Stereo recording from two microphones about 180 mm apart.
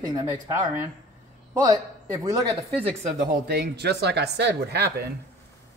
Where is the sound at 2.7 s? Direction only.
30° right (ahead or behind).